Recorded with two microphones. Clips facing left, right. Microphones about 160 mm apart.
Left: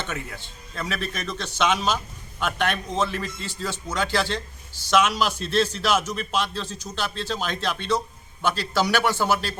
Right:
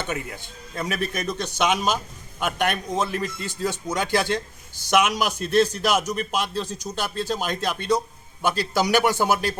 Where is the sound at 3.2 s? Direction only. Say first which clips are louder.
Right 4 dB; 15° right (ahead or behind).